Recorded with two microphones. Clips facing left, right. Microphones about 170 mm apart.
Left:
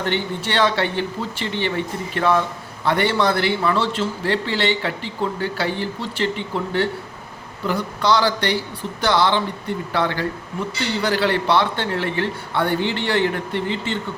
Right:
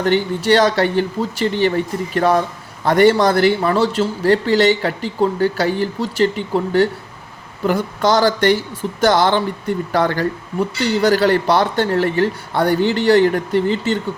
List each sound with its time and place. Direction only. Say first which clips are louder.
0.0 s a man's voice: right 7 dB; 40° right (ahead or behind)